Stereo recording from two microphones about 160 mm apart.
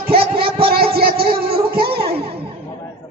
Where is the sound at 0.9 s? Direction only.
70° right (ahead or behind).